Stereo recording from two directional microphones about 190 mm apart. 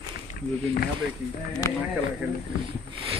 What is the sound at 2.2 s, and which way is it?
Speech, 10° right (ahead or behind).